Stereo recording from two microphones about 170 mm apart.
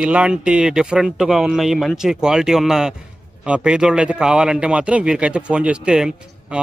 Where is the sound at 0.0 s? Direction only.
5° right (ahead or behind).